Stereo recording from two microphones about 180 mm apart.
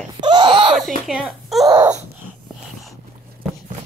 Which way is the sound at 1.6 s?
20° right (ahead or behind).